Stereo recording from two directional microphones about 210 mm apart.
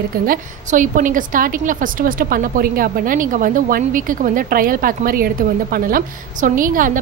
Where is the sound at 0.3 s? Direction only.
40° right (ahead or behind).